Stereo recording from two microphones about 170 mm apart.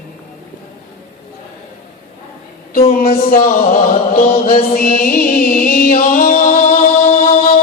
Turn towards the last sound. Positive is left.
turn(degrees=55)  # may be behind; listen again after turning